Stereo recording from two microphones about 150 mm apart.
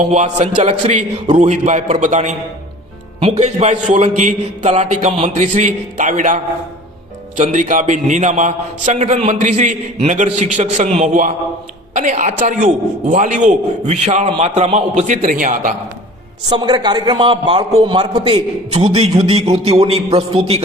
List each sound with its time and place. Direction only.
0.0 s a man's voice: 50° right (ahead or behind)
3.2 s a man's voice: 40° right (ahead or behind); by 15.7 s 65° right (ahead or behind)
16.5 s speech: 25° right (ahead or behind)
18.3 s a sound: 40° right (ahead or behind)